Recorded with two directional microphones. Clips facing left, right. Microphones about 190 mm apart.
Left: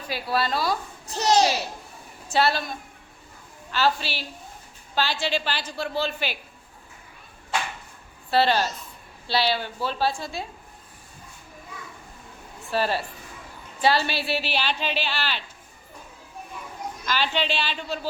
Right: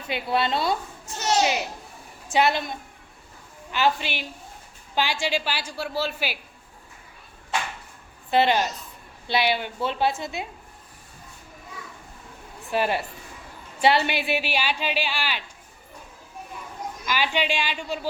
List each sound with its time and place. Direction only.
0.1 s a woman's voice: 20° right (ahead or behind)
1.0 s a child's voice: 35° left (ahead or behind)
2.2 s a woman's voice: 15° right (ahead or behind)
8.3 s a woman's voice: 15° right (ahead or behind)
12.7 s speech: 20° right (ahead or behind)
17.1 s speech: 10° right (ahead or behind)